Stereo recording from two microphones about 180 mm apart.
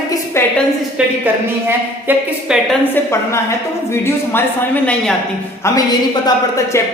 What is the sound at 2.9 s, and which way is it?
A woman's voice, 15° left (ahead or behind).